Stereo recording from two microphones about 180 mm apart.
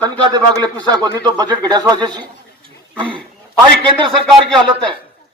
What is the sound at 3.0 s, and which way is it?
Speech, 5° left (ahead or behind).